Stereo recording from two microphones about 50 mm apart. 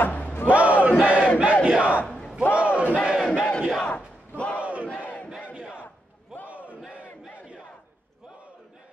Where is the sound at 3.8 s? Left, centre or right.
Left.